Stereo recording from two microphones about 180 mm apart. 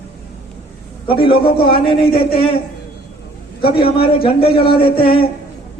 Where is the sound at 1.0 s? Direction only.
30° left (ahead or behind).